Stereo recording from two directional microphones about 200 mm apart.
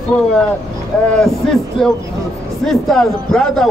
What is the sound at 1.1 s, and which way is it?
A man's voice, centre (ahead or behind).